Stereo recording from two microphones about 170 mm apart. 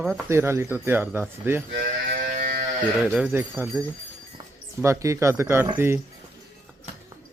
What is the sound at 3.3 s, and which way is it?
Speech, 15° right (ahead or behind).